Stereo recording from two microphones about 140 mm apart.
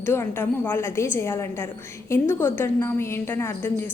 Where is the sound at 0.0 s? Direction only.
15° left (ahead or behind).